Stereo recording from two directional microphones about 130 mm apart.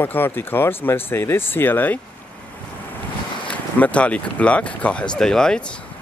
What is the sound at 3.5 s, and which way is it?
Speech, 10° left (ahead or behind).